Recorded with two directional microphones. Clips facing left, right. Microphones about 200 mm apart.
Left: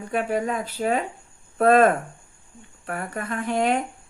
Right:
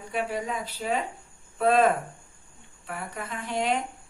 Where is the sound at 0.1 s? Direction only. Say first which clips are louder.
Left 5 dB; 50° left (ahead or behind).